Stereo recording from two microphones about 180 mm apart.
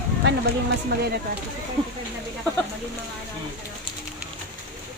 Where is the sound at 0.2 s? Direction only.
75° right (ahead or behind).